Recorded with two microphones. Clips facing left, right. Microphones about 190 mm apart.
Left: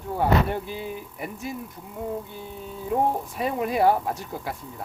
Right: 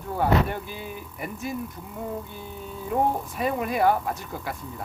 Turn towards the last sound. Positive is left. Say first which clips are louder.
# left 1 dB
turn(degrees=30)  # may be behind; listen again after turning